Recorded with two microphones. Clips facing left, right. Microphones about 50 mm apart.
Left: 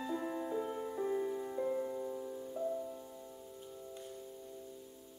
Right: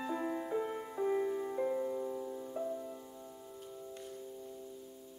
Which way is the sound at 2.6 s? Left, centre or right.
Right.